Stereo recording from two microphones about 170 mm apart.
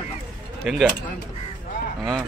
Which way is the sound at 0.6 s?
Centre (ahead or behind).